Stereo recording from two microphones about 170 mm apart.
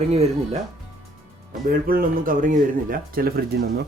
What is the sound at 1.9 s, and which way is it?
Speech, 55° right (ahead or behind).